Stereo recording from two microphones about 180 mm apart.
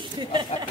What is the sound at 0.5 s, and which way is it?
Speech, 35° left (ahead or behind).